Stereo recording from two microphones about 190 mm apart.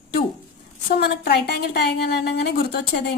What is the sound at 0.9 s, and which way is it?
A woman's voice, 60° left (ahead or behind).